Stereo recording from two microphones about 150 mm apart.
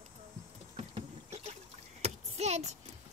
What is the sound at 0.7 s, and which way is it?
Vehicle, 40° right (ahead or behind).